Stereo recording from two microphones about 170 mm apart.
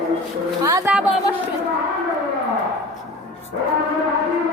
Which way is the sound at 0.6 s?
20° right (ahead or behind).